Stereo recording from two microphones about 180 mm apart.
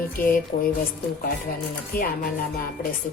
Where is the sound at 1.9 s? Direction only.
50° left (ahead or behind).